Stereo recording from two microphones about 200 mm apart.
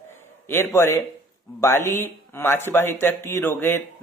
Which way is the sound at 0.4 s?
10° left (ahead or behind).